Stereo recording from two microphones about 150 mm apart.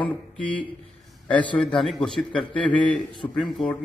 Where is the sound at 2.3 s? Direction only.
35° left (ahead or behind).